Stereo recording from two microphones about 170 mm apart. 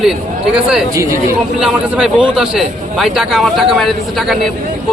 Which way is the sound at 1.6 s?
5° right (ahead or behind).